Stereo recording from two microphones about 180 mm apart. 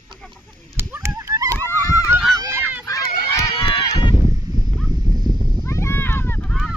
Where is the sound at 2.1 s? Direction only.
15° right (ahead or behind).